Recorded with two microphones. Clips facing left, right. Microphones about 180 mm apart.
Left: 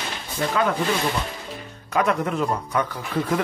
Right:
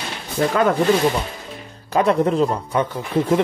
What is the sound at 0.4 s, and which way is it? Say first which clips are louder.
Speech: right 5 dB; 45° right (ahead or behind).